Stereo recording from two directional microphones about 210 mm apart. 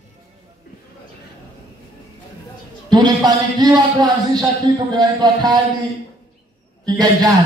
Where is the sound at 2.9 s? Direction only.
20° right (ahead or behind).